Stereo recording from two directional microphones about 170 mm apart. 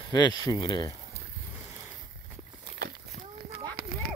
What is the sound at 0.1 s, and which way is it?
Speech, 25° left (ahead or behind).